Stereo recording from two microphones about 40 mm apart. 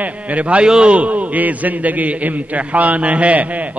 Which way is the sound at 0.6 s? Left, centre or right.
Right.